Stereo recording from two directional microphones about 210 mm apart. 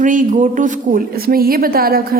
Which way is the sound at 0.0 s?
40° right (ahead or behind).